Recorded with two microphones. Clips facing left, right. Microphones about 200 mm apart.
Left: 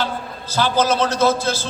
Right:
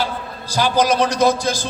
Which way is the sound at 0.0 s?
15° right (ahead or behind).